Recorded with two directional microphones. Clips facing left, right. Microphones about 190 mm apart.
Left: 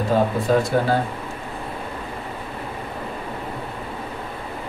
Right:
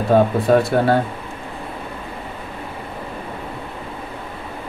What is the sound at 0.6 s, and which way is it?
Speech, 60° right (ahead or behind).